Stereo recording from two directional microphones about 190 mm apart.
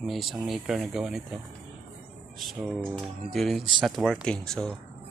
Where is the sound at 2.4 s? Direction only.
Centre (ahead or behind).